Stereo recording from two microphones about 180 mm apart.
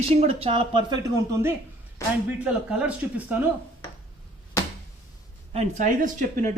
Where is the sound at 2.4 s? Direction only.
5° right (ahead or behind).